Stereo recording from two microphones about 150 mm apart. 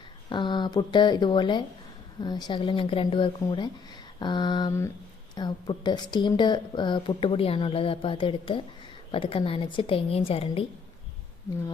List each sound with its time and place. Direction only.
0.3 s speech: 30° left (ahead or behind)